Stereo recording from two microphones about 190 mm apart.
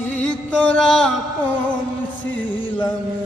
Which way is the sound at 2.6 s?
25° left (ahead or behind).